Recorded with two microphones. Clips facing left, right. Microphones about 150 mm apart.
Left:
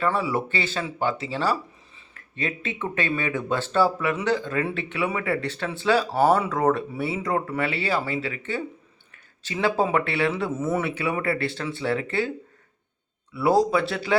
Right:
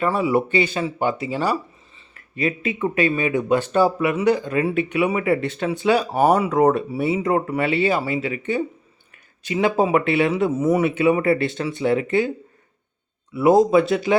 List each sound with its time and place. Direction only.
0.0 s speech: 15° right (ahead or behind)
13.3 s speech: 20° right (ahead or behind)